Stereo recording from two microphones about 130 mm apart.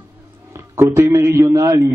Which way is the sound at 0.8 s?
20° right (ahead or behind).